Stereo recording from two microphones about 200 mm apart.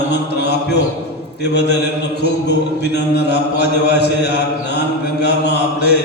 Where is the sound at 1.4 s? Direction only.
55° left (ahead or behind).